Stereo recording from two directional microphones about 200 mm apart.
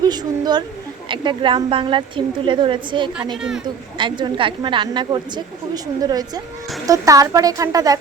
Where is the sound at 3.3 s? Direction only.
Centre (ahead or behind).